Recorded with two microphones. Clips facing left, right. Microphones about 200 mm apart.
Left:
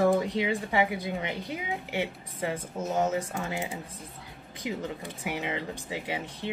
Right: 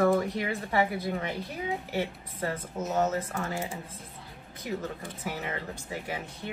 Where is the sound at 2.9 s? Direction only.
10° left (ahead or behind).